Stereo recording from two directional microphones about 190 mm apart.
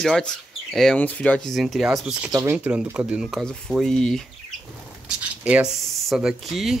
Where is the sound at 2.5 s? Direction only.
5° right (ahead or behind).